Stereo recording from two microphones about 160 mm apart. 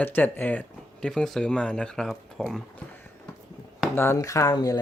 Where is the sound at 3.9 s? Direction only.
15° left (ahead or behind).